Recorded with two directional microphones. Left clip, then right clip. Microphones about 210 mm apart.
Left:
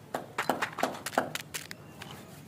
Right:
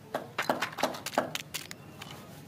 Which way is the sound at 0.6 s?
20° left (ahead or behind).